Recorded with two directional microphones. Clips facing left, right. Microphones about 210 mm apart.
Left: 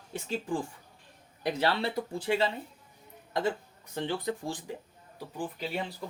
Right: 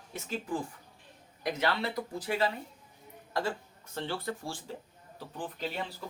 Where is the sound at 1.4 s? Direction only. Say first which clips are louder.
Left 2 dB; 30° left (ahead or behind).